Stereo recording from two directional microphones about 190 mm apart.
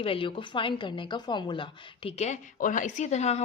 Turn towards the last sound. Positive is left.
turn(degrees=35)  # may be behind; listen again after turning